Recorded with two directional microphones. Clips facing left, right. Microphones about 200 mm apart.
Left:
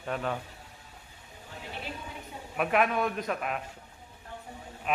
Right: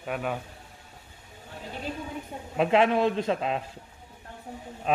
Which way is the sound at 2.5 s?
25° right (ahead or behind).